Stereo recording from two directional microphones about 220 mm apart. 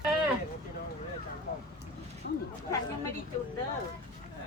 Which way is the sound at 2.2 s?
45° left (ahead or behind).